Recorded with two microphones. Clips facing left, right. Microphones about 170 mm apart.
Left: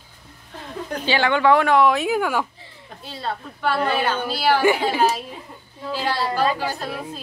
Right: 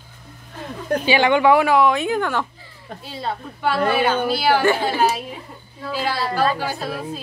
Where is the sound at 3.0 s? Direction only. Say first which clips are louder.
Right 1 dB; 10° right (ahead or behind).